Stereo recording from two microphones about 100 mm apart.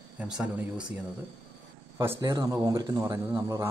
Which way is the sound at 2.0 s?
30° right (ahead or behind).